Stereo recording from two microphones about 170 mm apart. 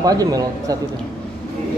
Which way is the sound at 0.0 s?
20° right (ahead or behind).